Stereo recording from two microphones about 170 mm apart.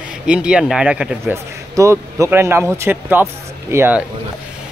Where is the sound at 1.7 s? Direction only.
20° right (ahead or behind).